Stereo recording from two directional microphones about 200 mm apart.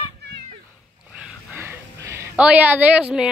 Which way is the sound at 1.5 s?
10° right (ahead or behind).